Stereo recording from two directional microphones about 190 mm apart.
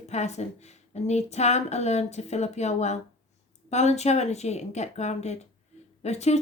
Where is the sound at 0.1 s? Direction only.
35° left (ahead or behind).